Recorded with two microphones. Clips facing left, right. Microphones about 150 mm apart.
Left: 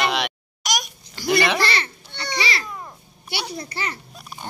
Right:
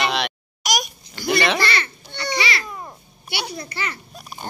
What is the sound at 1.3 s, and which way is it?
Speech, centre (ahead or behind).